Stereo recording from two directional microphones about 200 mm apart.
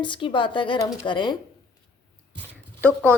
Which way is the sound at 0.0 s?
25° left (ahead or behind).